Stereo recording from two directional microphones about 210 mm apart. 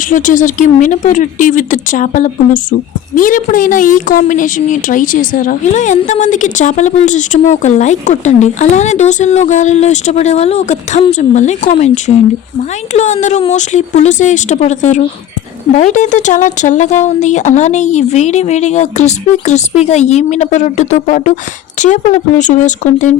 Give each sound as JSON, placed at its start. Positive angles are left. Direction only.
{"t": 0.1, "sound": "a woman's voice", "side_deg": 40}